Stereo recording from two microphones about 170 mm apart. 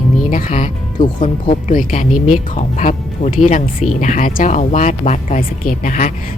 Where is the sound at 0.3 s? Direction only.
50° left (ahead or behind).